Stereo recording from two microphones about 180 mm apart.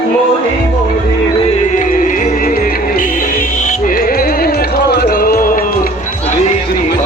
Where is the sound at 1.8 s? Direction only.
45° left (ahead or behind).